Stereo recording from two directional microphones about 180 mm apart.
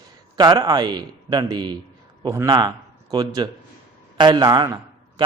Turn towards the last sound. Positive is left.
turn(degrees=-20)  # may be behind; listen again after turning